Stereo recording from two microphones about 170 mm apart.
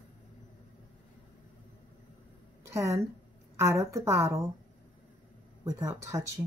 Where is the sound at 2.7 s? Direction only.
15° right (ahead or behind).